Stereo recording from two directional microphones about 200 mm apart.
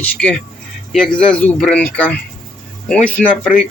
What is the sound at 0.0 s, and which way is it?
Speech, 5° left (ahead or behind).